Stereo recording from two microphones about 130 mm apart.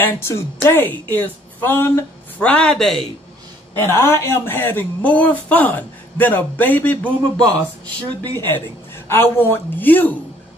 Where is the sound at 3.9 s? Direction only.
20° left (ahead or behind).